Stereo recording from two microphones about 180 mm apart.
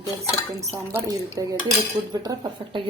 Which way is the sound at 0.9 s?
15° right (ahead or behind).